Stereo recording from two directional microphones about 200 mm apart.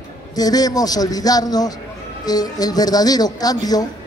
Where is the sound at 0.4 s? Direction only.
20° left (ahead or behind).